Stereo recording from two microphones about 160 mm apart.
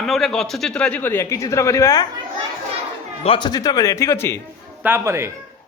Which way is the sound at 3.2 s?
30° left (ahead or behind).